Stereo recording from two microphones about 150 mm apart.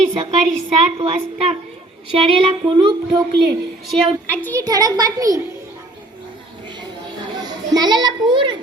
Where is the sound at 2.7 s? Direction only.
35° right (ahead or behind).